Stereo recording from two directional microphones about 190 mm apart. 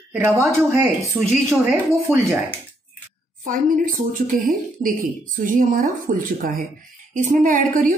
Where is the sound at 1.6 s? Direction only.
10° right (ahead or behind).